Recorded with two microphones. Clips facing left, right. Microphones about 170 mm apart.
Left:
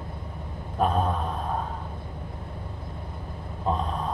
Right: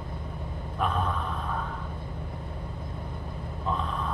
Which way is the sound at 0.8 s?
35° left (ahead or behind).